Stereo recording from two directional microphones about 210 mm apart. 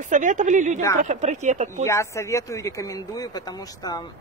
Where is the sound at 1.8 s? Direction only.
15° left (ahead or behind).